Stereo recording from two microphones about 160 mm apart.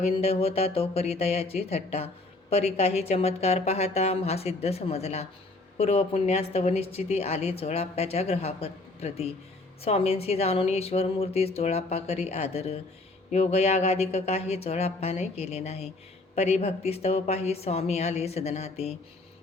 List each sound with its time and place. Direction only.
0.0 s a woman's voice: 40° left (ahead or behind)